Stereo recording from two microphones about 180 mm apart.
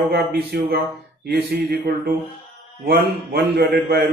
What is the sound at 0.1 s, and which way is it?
A man's voice, 65° right (ahead or behind).